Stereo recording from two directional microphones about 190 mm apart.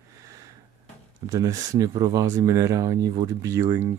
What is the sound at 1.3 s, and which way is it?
Speech, 15° right (ahead or behind).